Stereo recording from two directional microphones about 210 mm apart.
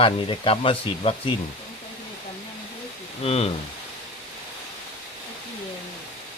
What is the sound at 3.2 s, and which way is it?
Speech, 30° left (ahead or behind).